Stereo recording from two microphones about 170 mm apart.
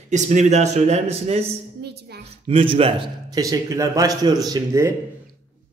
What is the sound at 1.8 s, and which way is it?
Music, 75° right (ahead or behind).